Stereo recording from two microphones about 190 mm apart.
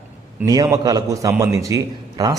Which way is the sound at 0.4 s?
20° right (ahead or behind).